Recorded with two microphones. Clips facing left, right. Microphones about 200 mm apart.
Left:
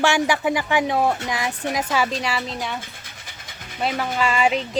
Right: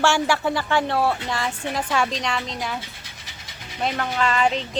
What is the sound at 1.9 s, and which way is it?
Speech, 5° left (ahead or behind).